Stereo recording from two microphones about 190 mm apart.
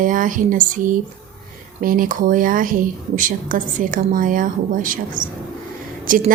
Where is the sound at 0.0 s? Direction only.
45° right (ahead or behind).